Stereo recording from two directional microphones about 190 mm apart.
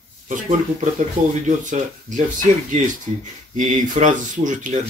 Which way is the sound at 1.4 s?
40° right (ahead or behind).